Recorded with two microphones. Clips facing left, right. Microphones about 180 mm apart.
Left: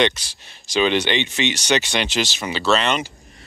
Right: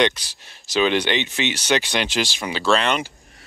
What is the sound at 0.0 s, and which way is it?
Speech, 10° right (ahead or behind).